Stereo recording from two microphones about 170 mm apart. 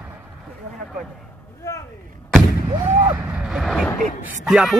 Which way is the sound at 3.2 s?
5° right (ahead or behind).